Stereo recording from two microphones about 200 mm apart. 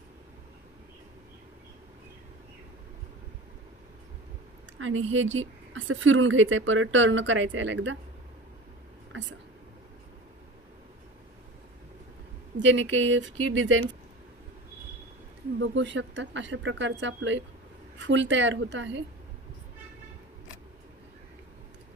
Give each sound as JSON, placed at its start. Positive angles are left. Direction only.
{"t": 4.8, "sound": "a woman's voice", "side_deg": -75}
{"t": 9.1, "sound": "speech", "side_deg": -65}
{"t": 12.5, "sound": "a woman's voice", "side_deg": -65}
{"t": 15.6, "sound": "a woman's voice", "side_deg": -65}